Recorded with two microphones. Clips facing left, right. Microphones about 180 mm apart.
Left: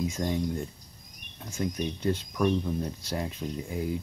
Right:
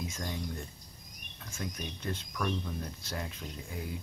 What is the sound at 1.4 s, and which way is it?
Speech, 25° left (ahead or behind).